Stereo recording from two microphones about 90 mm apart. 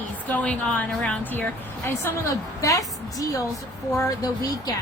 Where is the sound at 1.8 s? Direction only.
30° left (ahead or behind).